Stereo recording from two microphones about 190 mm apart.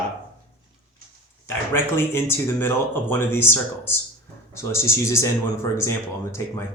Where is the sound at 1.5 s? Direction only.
15° left (ahead or behind).